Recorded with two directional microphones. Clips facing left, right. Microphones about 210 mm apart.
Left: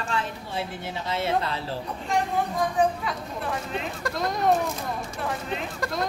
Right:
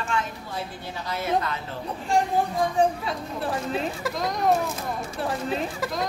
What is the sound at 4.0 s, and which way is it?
Speech, centre (ahead or behind).